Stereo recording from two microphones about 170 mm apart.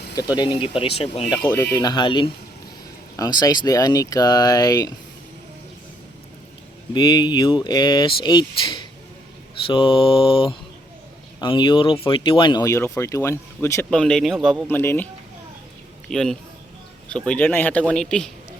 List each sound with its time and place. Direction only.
0.2 s speech: 25° left (ahead or behind)
1.3 s speech: 25° left (ahead or behind)
6.9 s speech: 25° left (ahead or behind)
13.9 s a man's voice: 5° left (ahead or behind)
14.8 s speech: 10° left (ahead or behind)
16.0 s a man's voice: 5° left (ahead or behind)